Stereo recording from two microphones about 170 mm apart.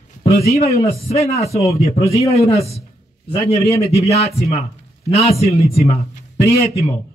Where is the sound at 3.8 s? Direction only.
35° left (ahead or behind).